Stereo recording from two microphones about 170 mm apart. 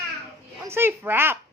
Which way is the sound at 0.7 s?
15° right (ahead or behind).